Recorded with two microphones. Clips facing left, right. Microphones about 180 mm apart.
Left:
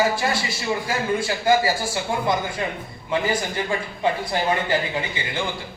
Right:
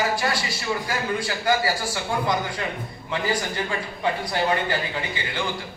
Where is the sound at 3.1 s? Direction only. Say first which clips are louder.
Left 3 dB; 25° left (ahead or behind).